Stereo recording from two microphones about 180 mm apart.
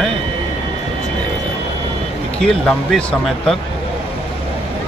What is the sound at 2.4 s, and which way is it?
Speech, 5° left (ahead or behind).